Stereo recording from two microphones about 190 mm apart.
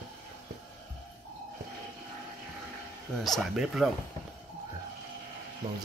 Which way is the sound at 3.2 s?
Centre (ahead or behind).